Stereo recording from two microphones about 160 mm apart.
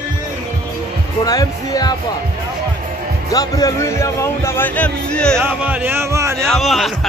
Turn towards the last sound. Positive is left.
turn(degrees=0)  # may be behind; listen again after turning